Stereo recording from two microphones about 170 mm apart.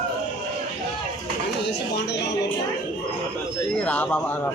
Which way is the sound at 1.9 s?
80° left.